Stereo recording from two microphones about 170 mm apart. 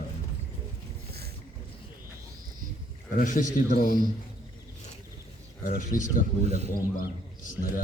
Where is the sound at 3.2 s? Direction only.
50° left (ahead or behind).